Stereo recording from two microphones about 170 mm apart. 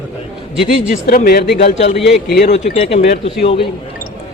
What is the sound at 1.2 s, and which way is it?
Speech, 65° left (ahead or behind).